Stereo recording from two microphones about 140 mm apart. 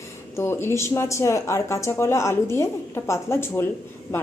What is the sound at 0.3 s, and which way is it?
A woman's voice, 20° left (ahead or behind).